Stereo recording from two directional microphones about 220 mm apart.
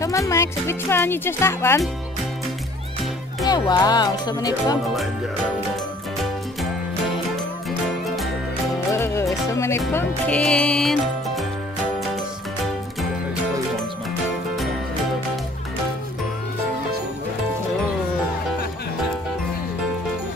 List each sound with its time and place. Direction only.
0.0 s speech: 15° left (ahead or behind)
3.4 s speech: 20° left (ahead or behind)
8.9 s music: 15° left (ahead or behind)